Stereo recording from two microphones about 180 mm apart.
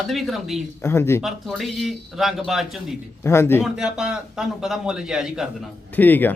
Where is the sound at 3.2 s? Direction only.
15° left (ahead or behind).